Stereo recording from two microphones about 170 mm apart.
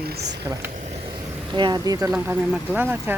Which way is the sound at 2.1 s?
10° right (ahead or behind).